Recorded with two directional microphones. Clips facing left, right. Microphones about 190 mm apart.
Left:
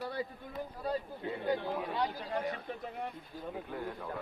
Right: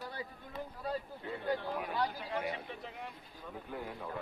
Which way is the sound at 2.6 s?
50° left (ahead or behind).